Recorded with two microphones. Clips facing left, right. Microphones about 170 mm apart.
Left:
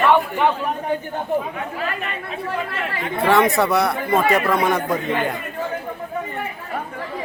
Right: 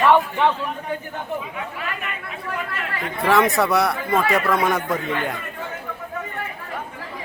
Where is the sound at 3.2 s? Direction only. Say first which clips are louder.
Left 1 dB; centre (ahead or behind).